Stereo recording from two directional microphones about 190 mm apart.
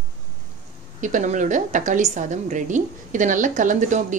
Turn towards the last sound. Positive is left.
turn(degrees=-40)  # may be behind; listen again after turning